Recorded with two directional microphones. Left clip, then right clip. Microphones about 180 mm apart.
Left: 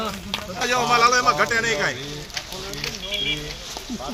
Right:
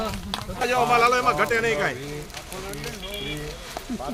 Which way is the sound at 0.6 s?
55° right (ahead or behind).